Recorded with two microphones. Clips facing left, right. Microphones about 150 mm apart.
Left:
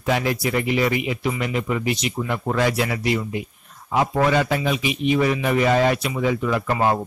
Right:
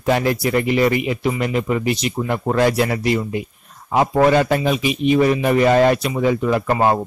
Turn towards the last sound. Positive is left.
turn(degrees=-35)  # may be behind; listen again after turning